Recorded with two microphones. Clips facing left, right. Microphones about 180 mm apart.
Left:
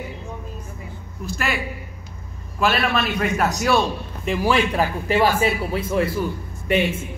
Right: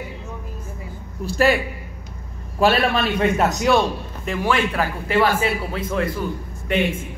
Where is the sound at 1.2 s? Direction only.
35° right (ahead or behind).